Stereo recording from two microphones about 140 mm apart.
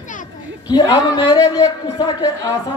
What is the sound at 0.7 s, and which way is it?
Speech, 30° left (ahead or behind).